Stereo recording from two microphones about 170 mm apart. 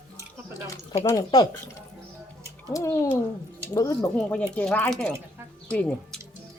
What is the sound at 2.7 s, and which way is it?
Speech, 20° left (ahead or behind).